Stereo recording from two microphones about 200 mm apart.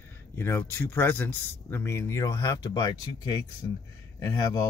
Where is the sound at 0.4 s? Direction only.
10° left (ahead or behind).